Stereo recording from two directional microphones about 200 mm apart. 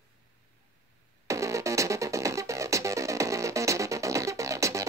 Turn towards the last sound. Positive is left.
turn(degrees=-15)  # may be behind; listen again after turning